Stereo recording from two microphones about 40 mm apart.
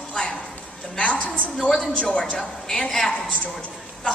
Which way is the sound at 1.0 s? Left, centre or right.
Left.